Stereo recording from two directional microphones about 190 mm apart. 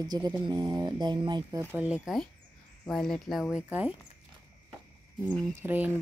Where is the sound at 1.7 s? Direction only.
5° right (ahead or behind).